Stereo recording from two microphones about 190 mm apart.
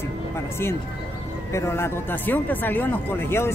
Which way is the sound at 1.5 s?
15° left (ahead or behind).